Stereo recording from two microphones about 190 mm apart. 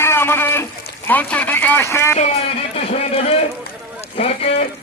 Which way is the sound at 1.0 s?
10° left (ahead or behind).